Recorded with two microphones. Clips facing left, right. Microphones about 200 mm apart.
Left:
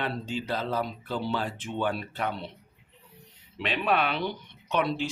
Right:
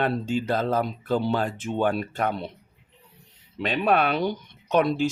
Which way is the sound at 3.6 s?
45° right (ahead or behind).